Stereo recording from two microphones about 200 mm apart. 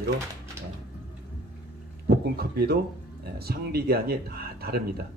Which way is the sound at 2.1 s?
50° right (ahead or behind).